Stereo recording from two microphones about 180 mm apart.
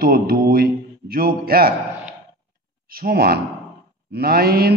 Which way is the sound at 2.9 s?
60° right (ahead or behind).